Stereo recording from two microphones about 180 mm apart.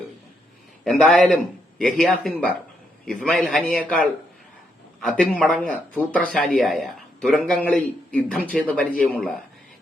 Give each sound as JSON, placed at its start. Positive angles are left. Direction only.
{"t": 1.0, "sound": "a man's voice", "side_deg": 0}